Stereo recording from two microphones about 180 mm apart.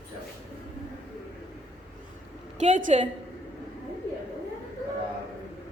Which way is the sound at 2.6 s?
45° right (ahead or behind).